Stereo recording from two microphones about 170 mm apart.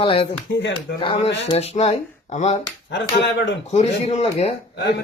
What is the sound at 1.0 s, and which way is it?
Speech, 30° left (ahead or behind).